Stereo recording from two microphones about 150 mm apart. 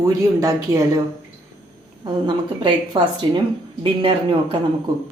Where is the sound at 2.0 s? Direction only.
30° right (ahead or behind).